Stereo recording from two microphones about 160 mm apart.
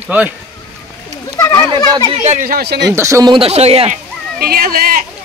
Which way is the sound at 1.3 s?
15° left (ahead or behind).